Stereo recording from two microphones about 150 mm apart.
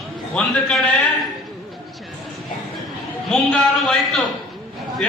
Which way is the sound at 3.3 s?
5° left (ahead or behind).